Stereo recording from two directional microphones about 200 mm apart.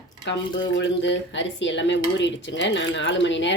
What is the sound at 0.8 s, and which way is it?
Speech, 65° left (ahead or behind).